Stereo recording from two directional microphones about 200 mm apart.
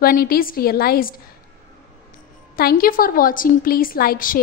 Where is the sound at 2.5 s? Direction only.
45° left (ahead or behind).